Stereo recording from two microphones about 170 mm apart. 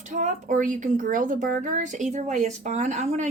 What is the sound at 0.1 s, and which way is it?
A woman's voice, 50° right (ahead or behind).